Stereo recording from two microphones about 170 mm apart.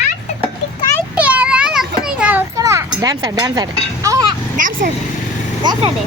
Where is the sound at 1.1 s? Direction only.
10° right (ahead or behind).